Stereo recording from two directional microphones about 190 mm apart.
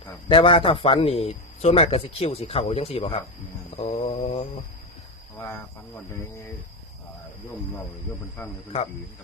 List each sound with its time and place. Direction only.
0.3 s speech: 30° left (ahead or behind)
3.8 s mantra: 35° left (ahead or behind)
8.4 s a man's voice: 10° left (ahead or behind)